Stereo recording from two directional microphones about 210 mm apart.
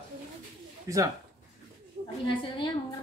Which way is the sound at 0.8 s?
15° right (ahead or behind).